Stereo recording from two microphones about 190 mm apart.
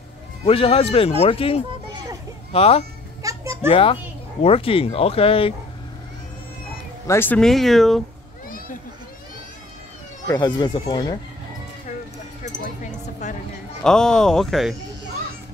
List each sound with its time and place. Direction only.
0.5 s speech: 30° left (ahead or behind)
3.2 s children playing: 15° right (ahead or behind)
3.7 s speech: 30° left (ahead or behind)
7.1 s speech: 10° left (ahead or behind)
8.5 s a sound: 50° left (ahead or behind)
10.2 s speech: 20° left (ahead or behind)
13.2 s a sound: 40° left (ahead or behind)
13.8 s speech: 5° left (ahead or behind)